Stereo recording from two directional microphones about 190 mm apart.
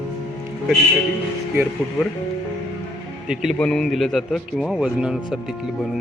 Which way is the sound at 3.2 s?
Centre (ahead or behind).